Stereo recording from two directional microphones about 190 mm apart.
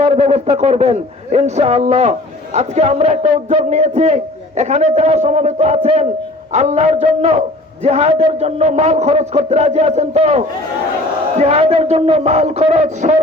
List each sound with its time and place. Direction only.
0.0 s speech: 30° right (ahead or behind)